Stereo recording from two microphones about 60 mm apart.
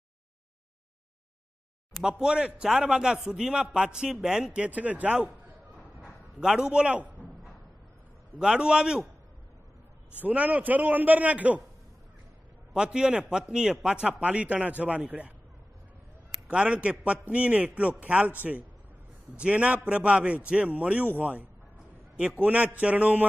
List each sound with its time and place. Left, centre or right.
2.0 s a man's voice: centre
4.6 s a man's voice: right
6.4 s a man's voice: centre
8.4 s a man's voice: centre
10.2 s a man's voice: right
12.7 s a man's voice: centre
16.4 s a man's voice: right